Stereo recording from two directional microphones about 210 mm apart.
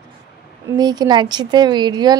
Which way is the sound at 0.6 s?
20° right (ahead or behind).